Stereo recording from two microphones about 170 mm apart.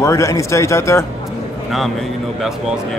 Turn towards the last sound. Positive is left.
turn(degrees=15)  # may be behind; listen again after turning